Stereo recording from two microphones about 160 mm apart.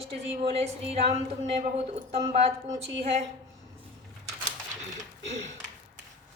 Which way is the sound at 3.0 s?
40° right (ahead or behind).